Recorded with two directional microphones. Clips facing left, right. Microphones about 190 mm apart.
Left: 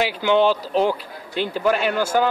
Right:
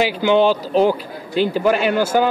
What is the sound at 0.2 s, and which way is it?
Speech, 5° right (ahead or behind).